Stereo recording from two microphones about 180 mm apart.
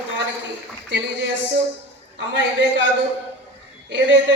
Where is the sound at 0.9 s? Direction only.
70° right (ahead or behind).